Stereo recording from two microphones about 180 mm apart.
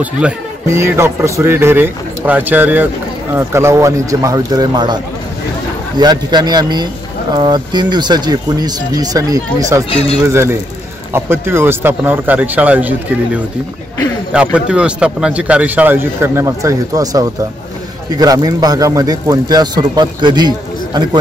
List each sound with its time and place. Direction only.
0.0 s a man's voice: 10° right (ahead or behind)